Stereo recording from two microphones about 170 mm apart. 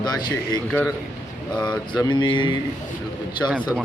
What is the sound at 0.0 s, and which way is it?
Speech, 25° left (ahead or behind).